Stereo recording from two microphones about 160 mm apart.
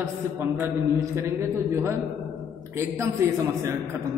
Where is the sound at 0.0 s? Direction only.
20° right (ahead or behind).